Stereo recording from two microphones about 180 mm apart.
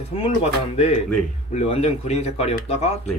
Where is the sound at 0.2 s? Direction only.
35° left (ahead or behind).